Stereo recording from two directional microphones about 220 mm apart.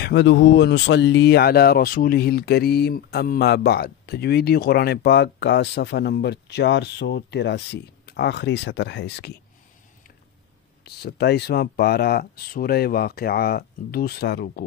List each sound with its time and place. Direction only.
0.0 s speech: 50° left (ahead or behind)
10.8 s speech: 45° left (ahead or behind)